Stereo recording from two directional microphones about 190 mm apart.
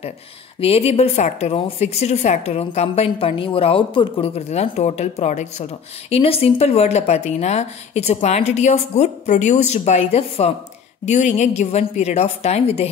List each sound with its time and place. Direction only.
0.6 s a woman's voice: 30° left (ahead or behind)